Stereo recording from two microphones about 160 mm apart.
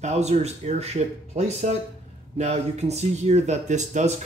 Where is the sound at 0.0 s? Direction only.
45° right (ahead or behind).